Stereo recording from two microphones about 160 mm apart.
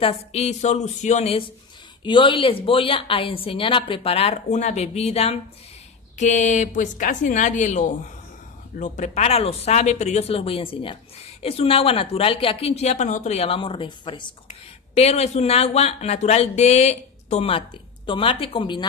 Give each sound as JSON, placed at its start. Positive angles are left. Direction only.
{"t": 0.0, "sound": "speech", "side_deg": 40}
{"t": 2.0, "sound": "speech", "side_deg": 30}
{"t": 14.5, "sound": "speech", "side_deg": 40}